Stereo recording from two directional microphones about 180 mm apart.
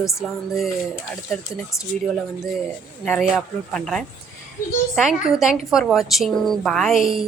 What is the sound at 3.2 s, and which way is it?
A woman's voice, centre (ahead or behind).